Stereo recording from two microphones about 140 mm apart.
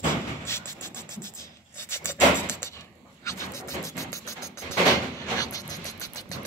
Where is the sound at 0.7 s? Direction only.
15° left (ahead or behind).